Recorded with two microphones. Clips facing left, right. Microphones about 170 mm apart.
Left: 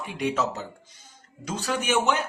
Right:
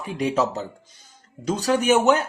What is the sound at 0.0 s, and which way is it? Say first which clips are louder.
A man's voice: right 4 dB; 35° right (ahead or behind).